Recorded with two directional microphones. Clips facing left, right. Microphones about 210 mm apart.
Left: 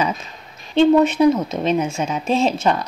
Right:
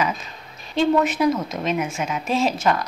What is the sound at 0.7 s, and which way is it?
Speech, 25° left (ahead or behind).